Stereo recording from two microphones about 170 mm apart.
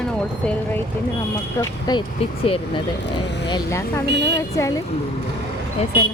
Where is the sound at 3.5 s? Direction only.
15° left (ahead or behind).